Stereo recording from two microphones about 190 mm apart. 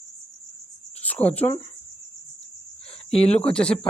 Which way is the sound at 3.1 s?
30° left (ahead or behind).